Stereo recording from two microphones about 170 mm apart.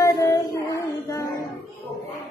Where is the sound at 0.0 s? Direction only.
20° left (ahead or behind).